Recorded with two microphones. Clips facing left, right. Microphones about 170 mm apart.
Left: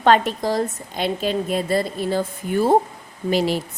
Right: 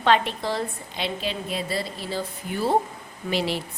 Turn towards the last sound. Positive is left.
turn(degrees=45)  # may be behind; listen again after turning